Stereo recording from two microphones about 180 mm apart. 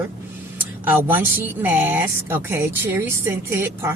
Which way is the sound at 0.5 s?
10° right (ahead or behind).